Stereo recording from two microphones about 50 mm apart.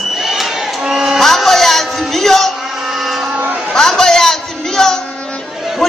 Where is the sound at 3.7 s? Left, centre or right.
Centre.